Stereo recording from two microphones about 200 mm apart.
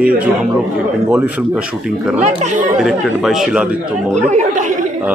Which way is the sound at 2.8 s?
Centre (ahead or behind).